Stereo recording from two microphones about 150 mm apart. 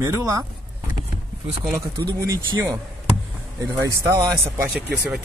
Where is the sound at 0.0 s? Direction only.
20° right (ahead or behind).